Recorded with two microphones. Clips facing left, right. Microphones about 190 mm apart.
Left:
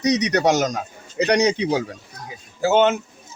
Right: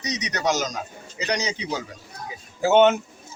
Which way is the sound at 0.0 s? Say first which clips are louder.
Left 8 dB; 65° left (ahead or behind).